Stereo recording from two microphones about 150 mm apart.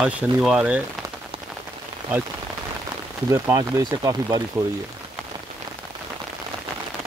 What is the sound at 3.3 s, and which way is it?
Speech, 20° right (ahead or behind).